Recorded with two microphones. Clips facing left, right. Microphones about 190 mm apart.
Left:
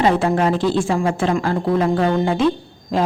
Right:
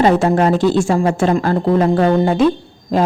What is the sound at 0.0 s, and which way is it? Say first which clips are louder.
Speech: right 4 dB; 45° right (ahead or behind).